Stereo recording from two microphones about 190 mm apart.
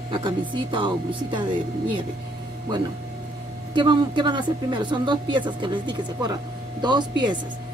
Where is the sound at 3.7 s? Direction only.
25° right (ahead or behind).